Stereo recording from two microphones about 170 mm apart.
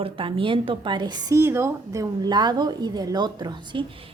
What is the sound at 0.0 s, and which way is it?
A woman's voice, 30° right (ahead or behind).